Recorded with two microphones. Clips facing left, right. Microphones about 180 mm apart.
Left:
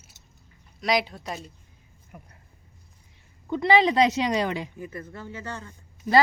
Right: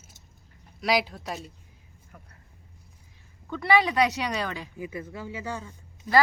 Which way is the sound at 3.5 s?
20° left (ahead or behind).